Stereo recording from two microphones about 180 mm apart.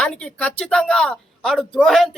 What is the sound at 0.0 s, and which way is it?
Speech, 5° left (ahead or behind).